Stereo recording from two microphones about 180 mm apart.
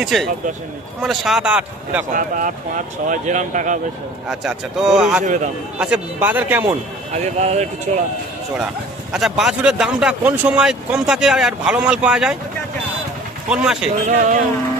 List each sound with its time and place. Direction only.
0.0 s speech: centre (ahead or behind)
2.1 s speech: 50° right (ahead or behind)
4.3 s speech: centre (ahead or behind)
7.3 s speech: 40° right (ahead or behind)
9.1 s speech: 5° right (ahead or behind)
13.5 s speech: 5° right (ahead or behind)
14.0 s speech: 40° right (ahead or behind)